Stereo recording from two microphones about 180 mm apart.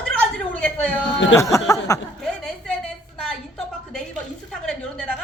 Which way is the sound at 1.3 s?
15° left (ahead or behind).